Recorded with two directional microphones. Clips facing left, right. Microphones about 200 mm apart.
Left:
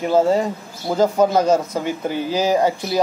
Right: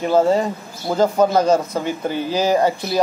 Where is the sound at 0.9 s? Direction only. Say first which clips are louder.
Even; 15° left (ahead or behind).